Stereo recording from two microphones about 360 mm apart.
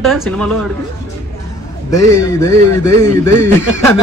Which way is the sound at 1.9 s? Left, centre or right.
Centre.